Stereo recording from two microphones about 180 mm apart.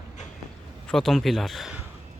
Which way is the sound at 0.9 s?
Centre (ahead or behind).